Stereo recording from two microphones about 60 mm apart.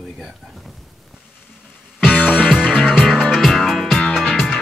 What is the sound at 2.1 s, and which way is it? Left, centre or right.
Music, left.